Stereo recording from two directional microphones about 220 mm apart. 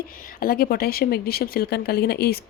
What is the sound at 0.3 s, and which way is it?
A woman's voice, 40° left (ahead or behind).